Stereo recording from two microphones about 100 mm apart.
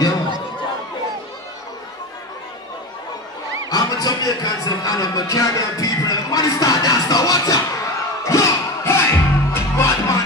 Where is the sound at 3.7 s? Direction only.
40° left (ahead or behind).